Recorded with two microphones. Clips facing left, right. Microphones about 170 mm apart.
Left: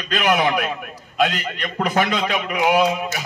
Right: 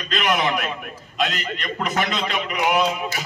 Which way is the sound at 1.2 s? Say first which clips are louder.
Left 4 dB; 55° left (ahead or behind).